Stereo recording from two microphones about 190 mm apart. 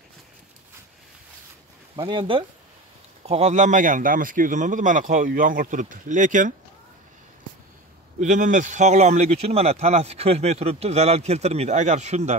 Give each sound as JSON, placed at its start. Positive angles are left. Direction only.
{"t": 2.0, "sound": "speech", "side_deg": -25}
{"t": 8.2, "sound": "speech", "side_deg": -40}